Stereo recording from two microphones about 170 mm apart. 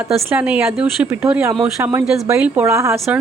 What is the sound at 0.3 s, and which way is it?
A woman's voice, 10° right (ahead or behind).